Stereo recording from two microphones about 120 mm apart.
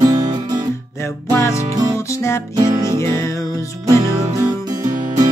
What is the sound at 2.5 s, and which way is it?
Music, 35° right (ahead or behind).